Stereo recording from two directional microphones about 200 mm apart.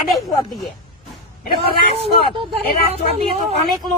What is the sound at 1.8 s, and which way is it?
Speech, 30° right (ahead or behind).